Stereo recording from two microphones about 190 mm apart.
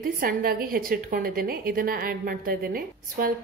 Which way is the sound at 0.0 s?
50° right (ahead or behind).